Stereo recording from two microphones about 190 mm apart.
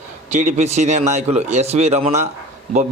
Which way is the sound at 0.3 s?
40° right (ahead or behind).